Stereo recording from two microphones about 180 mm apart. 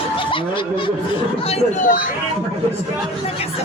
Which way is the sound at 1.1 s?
35° left (ahead or behind).